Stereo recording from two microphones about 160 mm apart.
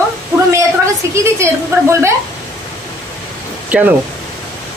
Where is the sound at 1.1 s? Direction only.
15° right (ahead or behind).